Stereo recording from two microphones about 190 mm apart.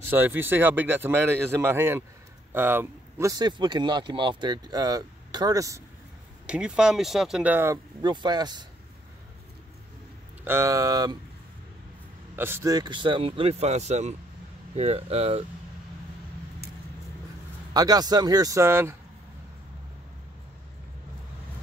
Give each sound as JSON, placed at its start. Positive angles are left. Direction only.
{"t": 0.1, "sound": "speech", "side_deg": -10}
{"t": 6.4, "sound": "speech", "side_deg": -5}
{"t": 8.0, "sound": "speech", "side_deg": -25}
{"t": 10.4, "sound": "speech", "side_deg": -15}
{"t": 12.4, "sound": "speech", "side_deg": -10}
{"t": 17.7, "sound": "speech", "side_deg": -20}